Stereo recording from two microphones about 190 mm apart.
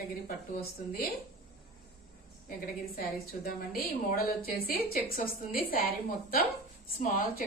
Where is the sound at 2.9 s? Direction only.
50° left (ahead or behind).